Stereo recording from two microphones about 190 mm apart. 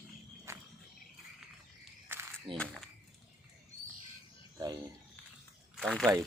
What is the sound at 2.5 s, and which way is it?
Speech, 5° left (ahead or behind).